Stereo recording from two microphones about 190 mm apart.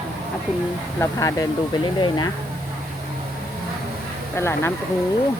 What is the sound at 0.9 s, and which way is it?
Speech, 15° left (ahead or behind).